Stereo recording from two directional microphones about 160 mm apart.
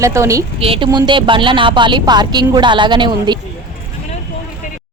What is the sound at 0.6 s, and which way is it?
Speech, 35° right (ahead or behind).